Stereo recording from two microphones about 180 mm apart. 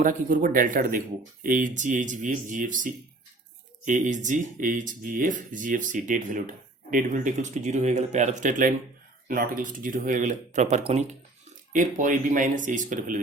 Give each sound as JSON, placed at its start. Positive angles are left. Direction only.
{"t": 0.0, "sound": "speech", "side_deg": -45}